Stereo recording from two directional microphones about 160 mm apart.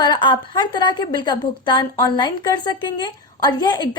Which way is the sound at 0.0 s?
30° left (ahead or behind).